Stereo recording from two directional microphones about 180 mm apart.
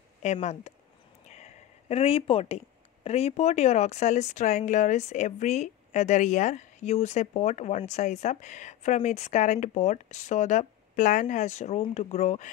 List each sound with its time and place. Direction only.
0.2 s speech: 40° left (ahead or behind)